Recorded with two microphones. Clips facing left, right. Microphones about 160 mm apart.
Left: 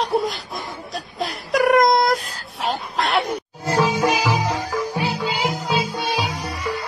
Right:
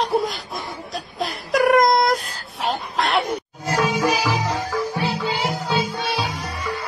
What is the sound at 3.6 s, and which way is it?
Music, 30° left (ahead or behind).